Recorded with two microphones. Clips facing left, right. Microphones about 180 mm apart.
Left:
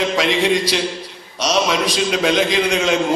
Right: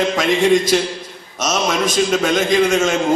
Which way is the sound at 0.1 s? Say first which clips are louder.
Right 3 dB; 50° right (ahead or behind).